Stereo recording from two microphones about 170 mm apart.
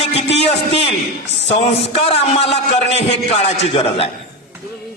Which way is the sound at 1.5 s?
35° left (ahead or behind).